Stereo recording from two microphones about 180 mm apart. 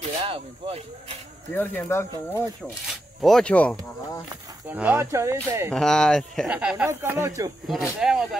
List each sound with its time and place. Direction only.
0.0 s speech: 30° right (ahead or behind)
1.5 s speech: 10° left (ahead or behind)
3.2 s speech: centre (ahead or behind)
4.6 s speech: 10° right (ahead or behind)
5.7 s speech: 5° left (ahead or behind); by 7.5 s 15° right (ahead or behind)
7.6 s speech: centre (ahead or behind)